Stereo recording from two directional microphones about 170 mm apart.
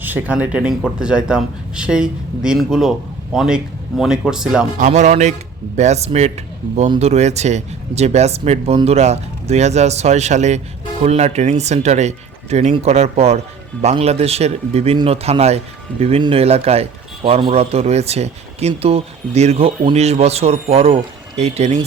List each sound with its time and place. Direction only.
0.0 s speech: 10° right (ahead or behind)
4.8 s speech: 45° right (ahead or behind)